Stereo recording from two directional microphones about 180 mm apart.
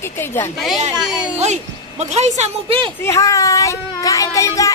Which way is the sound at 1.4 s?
40° right (ahead or behind).